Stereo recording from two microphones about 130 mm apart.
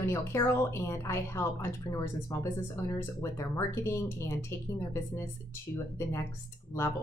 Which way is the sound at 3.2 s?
20° left (ahead or behind).